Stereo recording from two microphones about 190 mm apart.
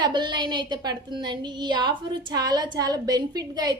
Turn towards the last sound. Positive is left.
turn(degrees=-20)  # may be behind; listen again after turning